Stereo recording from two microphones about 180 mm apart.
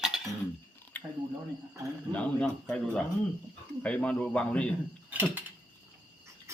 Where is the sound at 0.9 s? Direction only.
10° left (ahead or behind).